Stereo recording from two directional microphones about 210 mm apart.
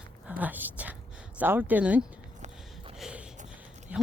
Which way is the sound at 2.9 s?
5° right (ahead or behind).